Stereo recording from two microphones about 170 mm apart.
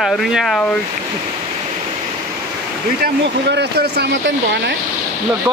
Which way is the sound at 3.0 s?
75° right (ahead or behind).